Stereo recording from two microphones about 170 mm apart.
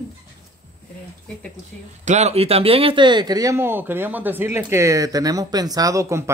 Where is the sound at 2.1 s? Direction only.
40° right (ahead or behind).